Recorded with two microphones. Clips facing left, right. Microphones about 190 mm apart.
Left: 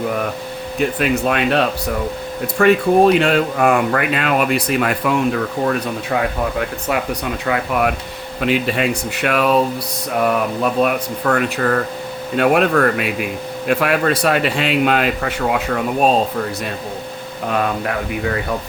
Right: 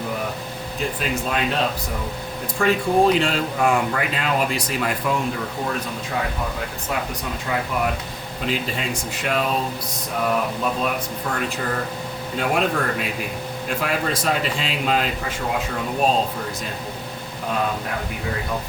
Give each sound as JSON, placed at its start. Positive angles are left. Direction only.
{"t": 0.8, "sound": "speech", "side_deg": 65}
{"t": 7.4, "sound": "speech", "side_deg": 70}
{"t": 10.6, "sound": "speech", "side_deg": 70}